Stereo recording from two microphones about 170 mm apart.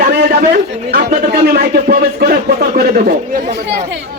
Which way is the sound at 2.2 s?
50° right (ahead or behind).